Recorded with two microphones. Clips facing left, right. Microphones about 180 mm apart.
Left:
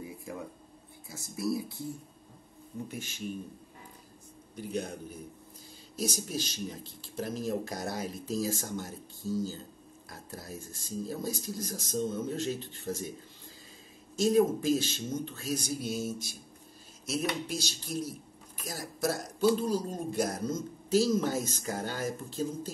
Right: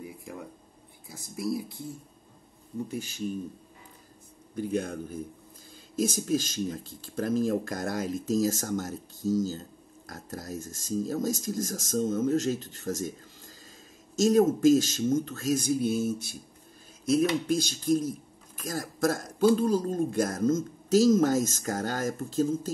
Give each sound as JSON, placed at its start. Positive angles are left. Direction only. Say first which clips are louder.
{"t": 1.1, "sound": "speech", "louder": "right 1 dB", "side_deg": -15}
{"t": 4.6, "sound": "speech", "louder": "right 6 dB", "side_deg": -50}
{"t": 14.1, "sound": "speech", "louder": "right 3 dB", "side_deg": -45}